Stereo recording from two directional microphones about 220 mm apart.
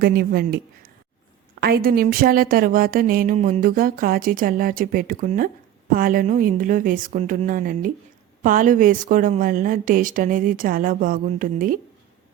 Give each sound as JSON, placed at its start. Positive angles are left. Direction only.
{"t": 0.0, "sound": "a woman's voice", "side_deg": -45}